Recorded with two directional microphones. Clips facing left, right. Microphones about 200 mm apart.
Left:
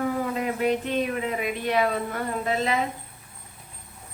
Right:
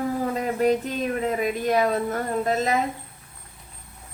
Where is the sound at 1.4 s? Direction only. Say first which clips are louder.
Right 2 dB; 40° right (ahead or behind).